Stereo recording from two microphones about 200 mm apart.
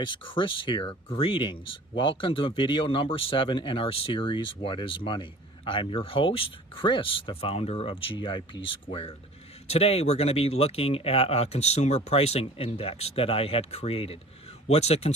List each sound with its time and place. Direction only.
0.0 s speech: 25° left (ahead or behind)